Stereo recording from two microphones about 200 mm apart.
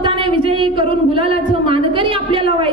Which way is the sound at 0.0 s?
25° right (ahead or behind).